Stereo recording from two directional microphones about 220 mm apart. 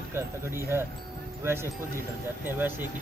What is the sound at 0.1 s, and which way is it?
Speech, 10° right (ahead or behind).